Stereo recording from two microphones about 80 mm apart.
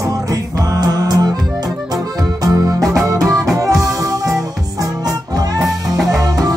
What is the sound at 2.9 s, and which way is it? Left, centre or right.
Music, right.